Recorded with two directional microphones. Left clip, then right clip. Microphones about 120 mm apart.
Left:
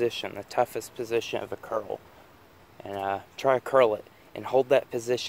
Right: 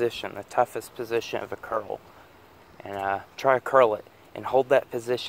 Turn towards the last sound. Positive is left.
turn(degrees=5)  # may be behind; listen again after turning